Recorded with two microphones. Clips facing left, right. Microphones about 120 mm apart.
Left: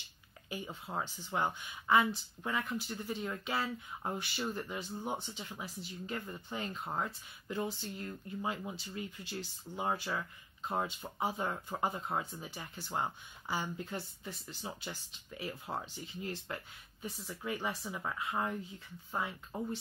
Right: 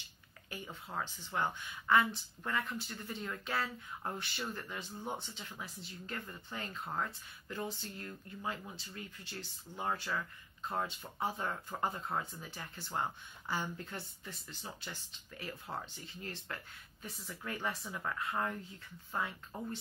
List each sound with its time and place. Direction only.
0.7 s speech: 15° left (ahead or behind)